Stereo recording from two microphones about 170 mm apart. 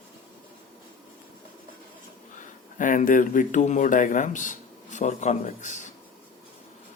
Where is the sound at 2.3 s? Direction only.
50° left (ahead or behind).